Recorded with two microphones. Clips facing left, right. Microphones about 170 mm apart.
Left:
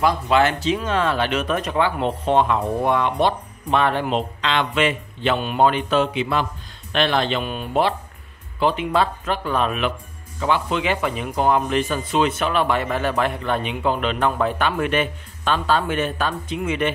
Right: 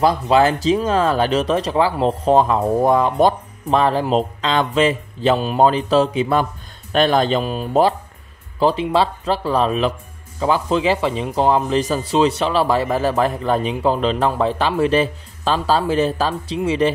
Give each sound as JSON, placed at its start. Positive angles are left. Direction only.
{"t": 0.0, "sound": "speech", "side_deg": -35}